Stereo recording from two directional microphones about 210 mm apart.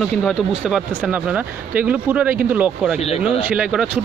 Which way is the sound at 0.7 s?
5° right (ahead or behind).